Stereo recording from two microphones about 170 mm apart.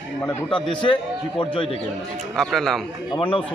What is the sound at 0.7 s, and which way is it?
A man's voice, 30° left (ahead or behind).